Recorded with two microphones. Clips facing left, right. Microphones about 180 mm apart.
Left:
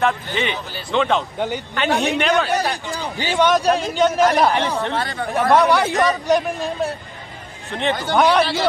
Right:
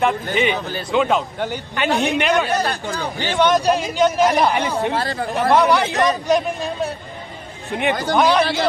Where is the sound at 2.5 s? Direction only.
15° left (ahead or behind).